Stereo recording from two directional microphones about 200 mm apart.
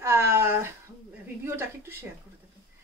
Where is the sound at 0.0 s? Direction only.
10° right (ahead or behind).